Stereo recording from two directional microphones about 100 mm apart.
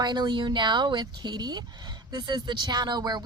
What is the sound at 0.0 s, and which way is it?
A woman's voice, 45° right (ahead or behind).